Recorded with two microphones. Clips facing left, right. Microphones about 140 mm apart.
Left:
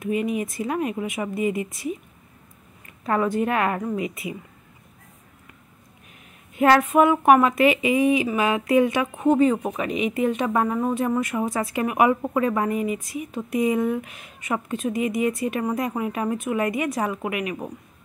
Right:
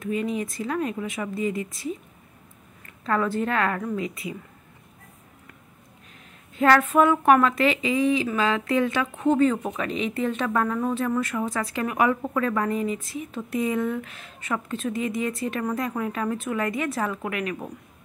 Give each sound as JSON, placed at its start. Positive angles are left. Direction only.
{"t": 0.1, "sound": "speech", "side_deg": 20}
{"t": 3.1, "sound": "speech", "side_deg": 20}
{"t": 6.6, "sound": "speech", "side_deg": 15}